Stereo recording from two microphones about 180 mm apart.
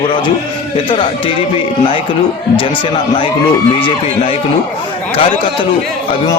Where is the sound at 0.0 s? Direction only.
30° left (ahead or behind).